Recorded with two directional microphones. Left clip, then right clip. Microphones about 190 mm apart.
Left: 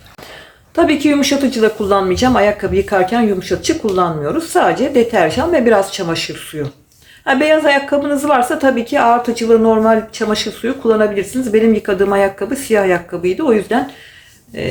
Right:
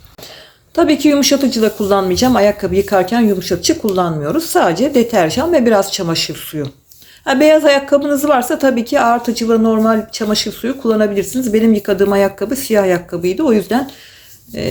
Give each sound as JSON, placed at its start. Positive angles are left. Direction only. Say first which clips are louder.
{"t": 0.8, "sound": "a woman's voice", "louder": "right 1 dB", "side_deg": -25}